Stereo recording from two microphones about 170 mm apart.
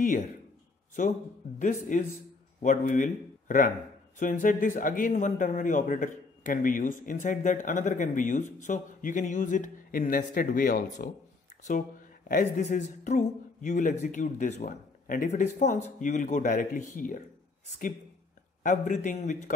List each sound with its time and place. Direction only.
1.6 s speech: 50° left (ahead or behind)
12.3 s speech: 50° left (ahead or behind)
18.6 s speech: 45° left (ahead or behind)